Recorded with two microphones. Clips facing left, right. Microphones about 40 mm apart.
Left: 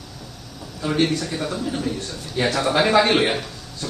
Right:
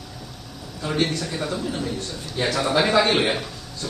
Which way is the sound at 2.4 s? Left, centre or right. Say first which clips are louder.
Left 3 dB; centre.